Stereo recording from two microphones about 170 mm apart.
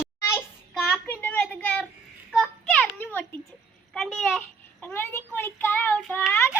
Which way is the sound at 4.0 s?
Centre (ahead or behind).